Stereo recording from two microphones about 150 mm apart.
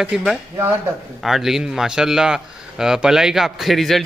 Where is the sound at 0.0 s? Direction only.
5° right (ahead or behind).